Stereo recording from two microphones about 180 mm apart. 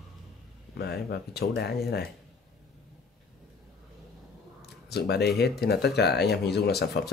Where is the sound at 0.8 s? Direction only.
65° left (ahead or behind).